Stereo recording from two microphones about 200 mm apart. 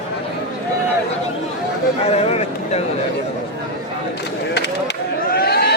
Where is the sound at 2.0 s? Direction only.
30° left (ahead or behind).